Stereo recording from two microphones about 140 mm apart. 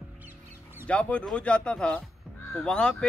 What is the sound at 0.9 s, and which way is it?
Speech, 10° left (ahead or behind).